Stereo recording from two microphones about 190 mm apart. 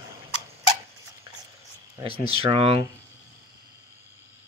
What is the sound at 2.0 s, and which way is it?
Speech, 30° right (ahead or behind).